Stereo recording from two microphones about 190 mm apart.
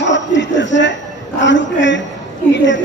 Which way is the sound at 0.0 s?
70° left (ahead or behind).